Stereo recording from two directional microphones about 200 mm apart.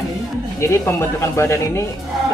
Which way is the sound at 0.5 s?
15° left (ahead or behind).